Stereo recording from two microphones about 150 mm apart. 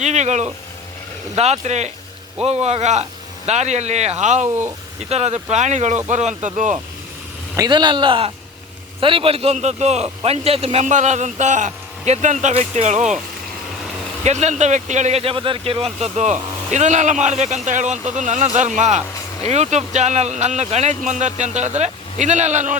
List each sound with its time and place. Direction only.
0.0 s speech: 50° right (ahead or behind)
4.4 s speech: 15° right (ahead or behind)
5.0 s speech: 45° right (ahead or behind)
7.5 s speech: 25° right (ahead or behind); by 13.1 s 50° right (ahead or behind)
14.3 s speech: 50° right (ahead or behind)